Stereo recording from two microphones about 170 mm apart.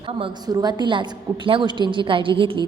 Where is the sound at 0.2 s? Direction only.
25° right (ahead or behind).